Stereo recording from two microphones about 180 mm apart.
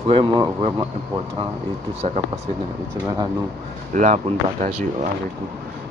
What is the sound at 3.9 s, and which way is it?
Speech, 45° right (ahead or behind).